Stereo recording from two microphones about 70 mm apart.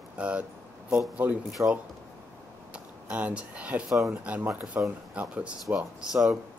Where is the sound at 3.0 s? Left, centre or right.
Centre.